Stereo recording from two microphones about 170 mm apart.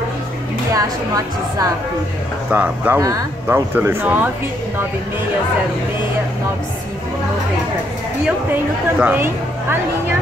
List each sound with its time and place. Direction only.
0.7 s a woman's voice: 20° right (ahead or behind)
2.5 s speech: 10° right (ahead or behind)
9.0 s speech: 10° right (ahead or behind)